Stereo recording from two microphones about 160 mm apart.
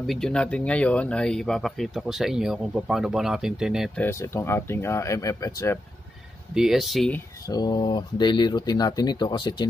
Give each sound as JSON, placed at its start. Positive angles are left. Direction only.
{"t": 0.0, "sound": "speech", "side_deg": 0}
{"t": 4.0, "sound": "speech", "side_deg": 15}
{"t": 6.5, "sound": "speech", "side_deg": 0}
{"t": 7.4, "sound": "speech", "side_deg": 25}